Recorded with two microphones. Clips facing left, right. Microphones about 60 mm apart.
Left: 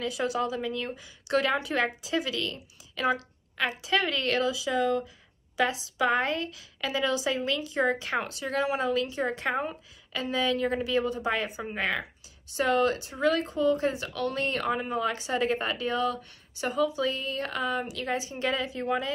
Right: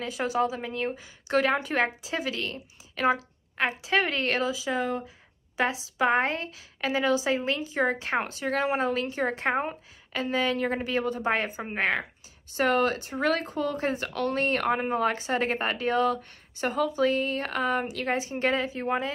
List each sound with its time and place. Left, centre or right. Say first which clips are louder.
0.0 s a woman's voice: right 2 dB; right